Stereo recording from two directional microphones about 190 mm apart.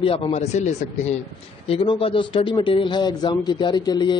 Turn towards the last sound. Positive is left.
turn(degrees=20)  # may be behind; listen again after turning